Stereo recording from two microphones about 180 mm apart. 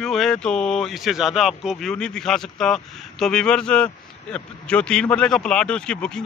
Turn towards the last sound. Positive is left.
turn(degrees=5)  # may be behind; listen again after turning